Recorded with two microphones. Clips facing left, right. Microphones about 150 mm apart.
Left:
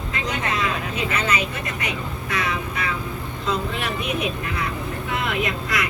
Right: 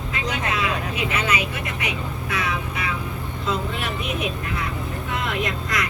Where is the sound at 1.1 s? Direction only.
10° right (ahead or behind).